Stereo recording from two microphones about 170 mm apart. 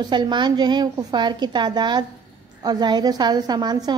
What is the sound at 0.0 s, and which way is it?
A woman's voice, 25° right (ahead or behind).